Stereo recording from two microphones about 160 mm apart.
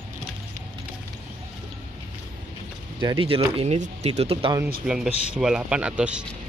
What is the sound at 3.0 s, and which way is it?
Speech, 30° right (ahead or behind).